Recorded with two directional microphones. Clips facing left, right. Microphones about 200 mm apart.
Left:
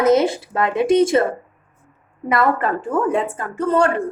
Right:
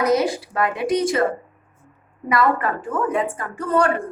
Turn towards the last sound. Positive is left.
turn(degrees=25)  # may be behind; listen again after turning